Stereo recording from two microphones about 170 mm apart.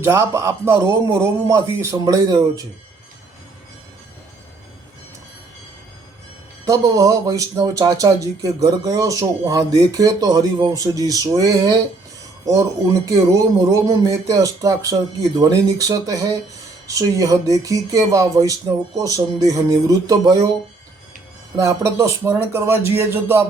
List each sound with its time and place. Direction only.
0.0 s a man's voice: 15° right (ahead or behind)
6.7 s speech: 20° right (ahead or behind)
13.1 s speech: 20° right (ahead or behind)
21.6 s a man's voice: 20° right (ahead or behind)